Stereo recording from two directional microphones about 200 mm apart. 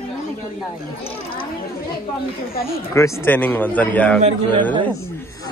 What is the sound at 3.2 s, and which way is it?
A man's voice, 10° left (ahead or behind).